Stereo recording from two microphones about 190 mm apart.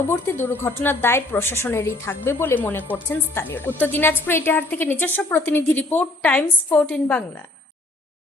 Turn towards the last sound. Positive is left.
turn(degrees=10)  # may be behind; listen again after turning